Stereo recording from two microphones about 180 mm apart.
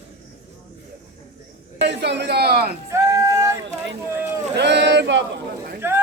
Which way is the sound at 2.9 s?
15° right (ahead or behind).